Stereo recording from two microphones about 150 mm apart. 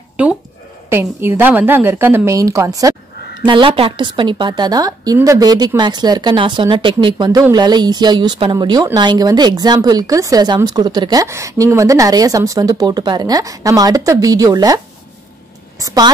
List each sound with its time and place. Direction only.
0.2 s a woman's voice: 10° right (ahead or behind)
3.4 s a woman's voice: 35° right (ahead or behind)
15.8 s speech: 25° right (ahead or behind)